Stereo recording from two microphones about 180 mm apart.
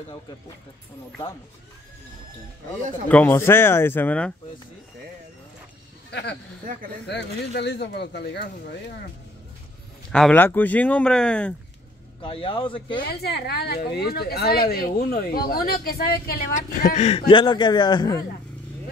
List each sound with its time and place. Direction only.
3.1 s speech: 10° left (ahead or behind)
6.0 s a man's voice: 70° left (ahead or behind)
10.1 s speech: 5° left (ahead or behind)
12.2 s a man's voice: 30° left (ahead or behind)
13.2 s a woman's voice: 65° left (ahead or behind)
16.9 s speech: 35° left (ahead or behind)
17.3 s a man's voice: 25° left (ahead or behind)